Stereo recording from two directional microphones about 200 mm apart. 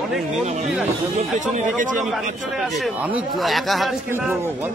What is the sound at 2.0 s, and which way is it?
A man's voice, centre (ahead or behind).